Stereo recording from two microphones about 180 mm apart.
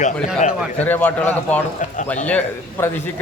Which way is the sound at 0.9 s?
10° left (ahead or behind).